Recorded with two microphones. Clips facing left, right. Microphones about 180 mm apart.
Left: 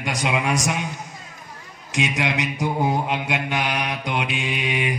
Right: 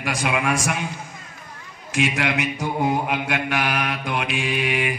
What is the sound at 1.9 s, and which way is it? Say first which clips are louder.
Mantra: right 1 dB; 20° left (ahead or behind).